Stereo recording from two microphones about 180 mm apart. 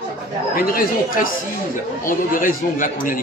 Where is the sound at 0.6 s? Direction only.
55° left (ahead or behind).